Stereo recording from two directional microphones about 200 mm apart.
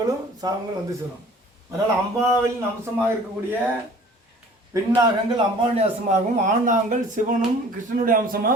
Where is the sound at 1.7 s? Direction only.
15° right (ahead or behind).